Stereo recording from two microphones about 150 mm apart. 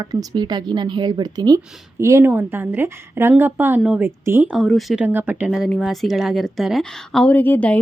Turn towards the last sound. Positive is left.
turn(degrees=10)  # may be behind; listen again after turning